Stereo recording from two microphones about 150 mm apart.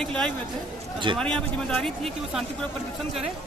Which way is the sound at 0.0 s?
5° left (ahead or behind).